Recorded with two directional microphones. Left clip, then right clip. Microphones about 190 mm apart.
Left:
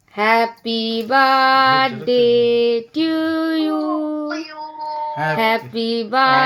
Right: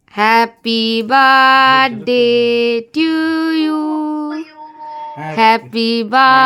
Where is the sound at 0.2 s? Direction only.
40° right (ahead or behind).